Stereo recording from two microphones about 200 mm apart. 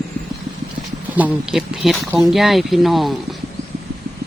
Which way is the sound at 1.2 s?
5° right (ahead or behind).